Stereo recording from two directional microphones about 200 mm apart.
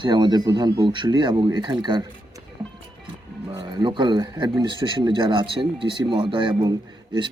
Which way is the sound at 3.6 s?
20° right (ahead or behind).